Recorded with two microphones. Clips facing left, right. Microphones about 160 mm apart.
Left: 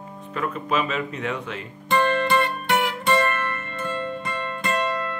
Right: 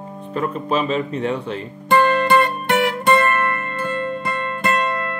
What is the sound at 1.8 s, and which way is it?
Music, 50° right (ahead or behind).